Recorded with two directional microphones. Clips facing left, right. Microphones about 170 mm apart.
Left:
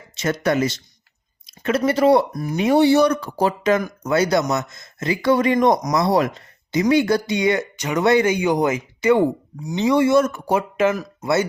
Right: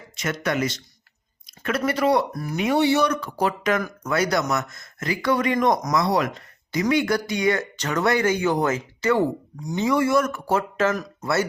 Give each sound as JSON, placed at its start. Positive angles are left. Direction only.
{"t": 0.2, "sound": "speech", "side_deg": 30}
{"t": 2.3, "sound": "speech", "side_deg": 15}
{"t": 2.6, "sound": "speech", "side_deg": 35}